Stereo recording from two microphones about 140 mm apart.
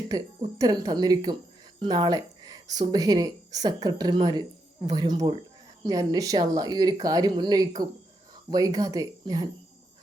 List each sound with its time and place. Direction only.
0.1 s speech: 25° right (ahead or behind)